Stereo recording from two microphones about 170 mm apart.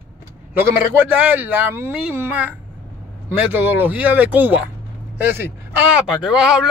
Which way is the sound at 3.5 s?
10° right (ahead or behind).